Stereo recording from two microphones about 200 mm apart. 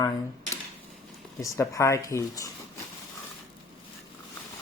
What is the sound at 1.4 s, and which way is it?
Speech, 15° left (ahead or behind).